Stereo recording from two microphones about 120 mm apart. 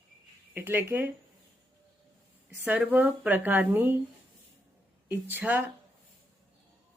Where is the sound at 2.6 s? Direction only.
10° right (ahead or behind).